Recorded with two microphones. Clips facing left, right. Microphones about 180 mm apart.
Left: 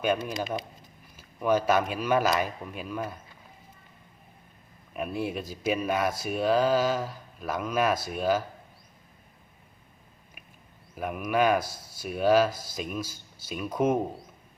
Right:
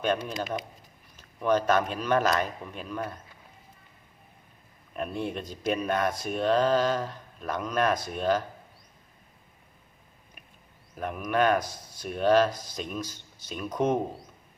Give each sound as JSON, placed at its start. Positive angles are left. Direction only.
{"t": 0.3, "sound": "speech", "side_deg": 30}
{"t": 1.1, "sound": "speech", "side_deg": 10}
{"t": 4.9, "sound": "speech", "side_deg": 5}
{"t": 10.9, "sound": "speech", "side_deg": 5}